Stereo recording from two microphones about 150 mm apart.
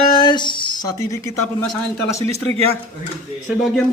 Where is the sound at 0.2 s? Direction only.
30° left (ahead or behind).